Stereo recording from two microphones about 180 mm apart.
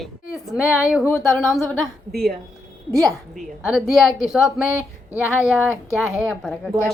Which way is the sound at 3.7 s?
Centre (ahead or behind).